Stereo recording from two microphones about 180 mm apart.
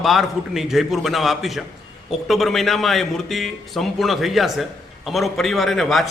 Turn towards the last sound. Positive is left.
turn(degrees=0)  # may be behind; listen again after turning